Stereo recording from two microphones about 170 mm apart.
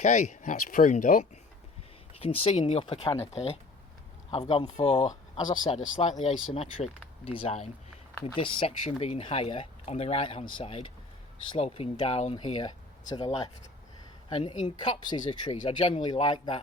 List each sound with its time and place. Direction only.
0.0 s speech: 45° left (ahead or behind)
2.2 s a woman's voice: 35° left (ahead or behind)